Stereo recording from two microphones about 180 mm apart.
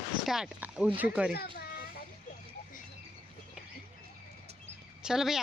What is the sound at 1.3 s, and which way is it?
Children playing, 60° left (ahead or behind).